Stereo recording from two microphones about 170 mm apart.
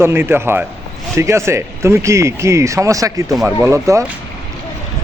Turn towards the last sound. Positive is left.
turn(degrees=-15)  # may be behind; listen again after turning